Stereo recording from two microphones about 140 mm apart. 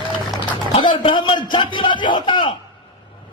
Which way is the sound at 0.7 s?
35° left (ahead or behind).